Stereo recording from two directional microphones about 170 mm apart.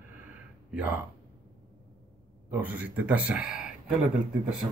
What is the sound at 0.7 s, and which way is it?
Speech, 10° right (ahead or behind).